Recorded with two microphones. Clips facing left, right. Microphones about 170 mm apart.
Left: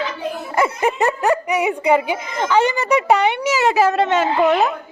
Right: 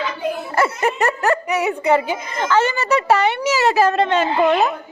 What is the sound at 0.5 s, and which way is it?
Speech, 15° left (ahead or behind).